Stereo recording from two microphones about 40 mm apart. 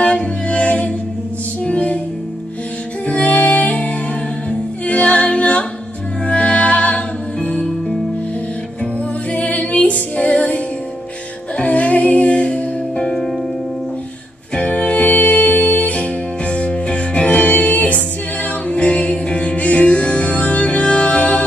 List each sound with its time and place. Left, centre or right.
0.0 s music: left
3.1 s music: left
9.3 s music: left
12.9 s music: centre
14.5 s music: left